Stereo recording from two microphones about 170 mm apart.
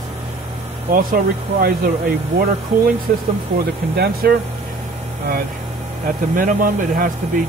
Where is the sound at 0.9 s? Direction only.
55° right (ahead or behind).